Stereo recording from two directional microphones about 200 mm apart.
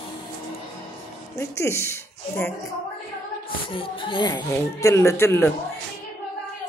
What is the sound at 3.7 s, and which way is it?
Speech, 25° left (ahead or behind).